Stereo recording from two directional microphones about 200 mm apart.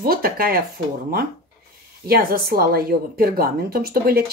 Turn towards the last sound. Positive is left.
turn(degrees=-50)  # may be behind; listen again after turning